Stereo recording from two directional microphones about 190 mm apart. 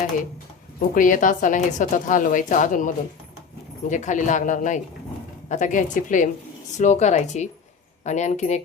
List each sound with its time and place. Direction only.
0.8 s a woman's voice: 45° left (ahead or behind)